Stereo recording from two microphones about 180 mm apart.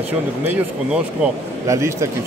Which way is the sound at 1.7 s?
15° right (ahead or behind).